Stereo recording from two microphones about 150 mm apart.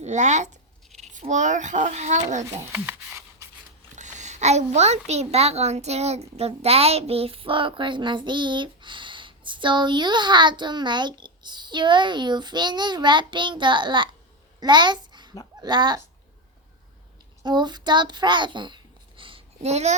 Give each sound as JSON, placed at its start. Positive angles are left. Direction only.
{"t": 0.0, "sound": "a child's voice", "side_deg": -50}
{"t": 2.7, "sound": "a sound", "side_deg": -15}
{"t": 3.9, "sound": "a child's voice", "side_deg": -55}
{"t": 14.6, "sound": "a sound", "side_deg": -30}
{"t": 15.6, "sound": "a child's voice", "side_deg": -30}
{"t": 17.4, "sound": "a child's voice", "side_deg": -30}